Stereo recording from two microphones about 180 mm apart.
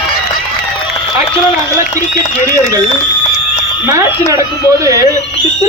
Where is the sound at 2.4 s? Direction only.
20° right (ahead or behind).